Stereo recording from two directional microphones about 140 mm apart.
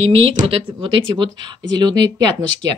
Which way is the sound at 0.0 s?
45° right (ahead or behind).